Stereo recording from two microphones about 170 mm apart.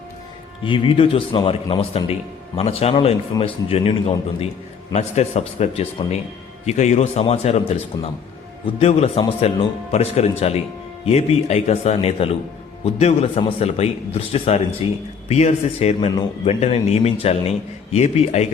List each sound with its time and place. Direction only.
0.6 s speech: 30° left (ahead or behind)